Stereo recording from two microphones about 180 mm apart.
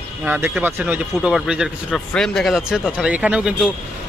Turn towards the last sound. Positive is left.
turn(degrees=-5)  # may be behind; listen again after turning